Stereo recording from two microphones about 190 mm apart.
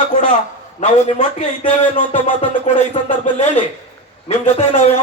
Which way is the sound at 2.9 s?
35° left (ahead or behind).